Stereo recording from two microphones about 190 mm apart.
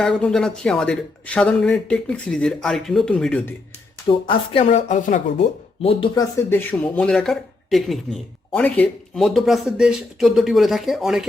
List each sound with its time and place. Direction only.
0.0 s speech: 5° left (ahead or behind)
4.3 s speech: 30° left (ahead or behind)
5.8 s speech: 30° left (ahead or behind)
6.3 s speech: 10° left (ahead or behind)